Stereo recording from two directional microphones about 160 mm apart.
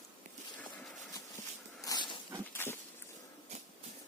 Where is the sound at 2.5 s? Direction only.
15° left (ahead or behind).